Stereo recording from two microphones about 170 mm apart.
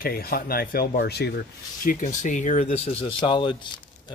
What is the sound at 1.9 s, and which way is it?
Speech, 50° left (ahead or behind).